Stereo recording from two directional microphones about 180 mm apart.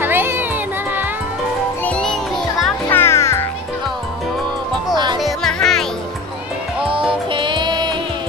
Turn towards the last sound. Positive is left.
turn(degrees=-25)  # may be behind; listen again after turning